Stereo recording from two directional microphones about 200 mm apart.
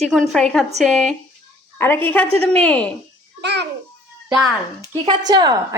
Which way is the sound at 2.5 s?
5° left (ahead or behind).